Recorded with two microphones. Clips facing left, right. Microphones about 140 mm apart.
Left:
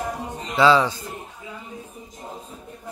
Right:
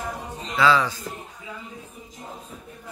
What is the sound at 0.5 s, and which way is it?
Speech, 30° left (ahead or behind).